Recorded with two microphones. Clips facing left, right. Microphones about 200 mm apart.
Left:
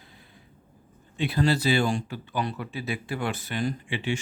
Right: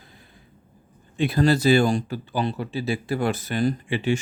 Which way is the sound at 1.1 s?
45° right (ahead or behind).